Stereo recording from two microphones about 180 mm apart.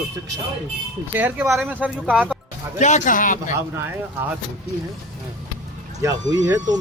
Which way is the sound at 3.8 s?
10° right (ahead or behind).